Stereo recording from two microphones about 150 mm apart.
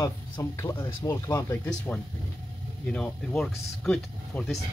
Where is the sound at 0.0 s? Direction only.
20° left (ahead or behind).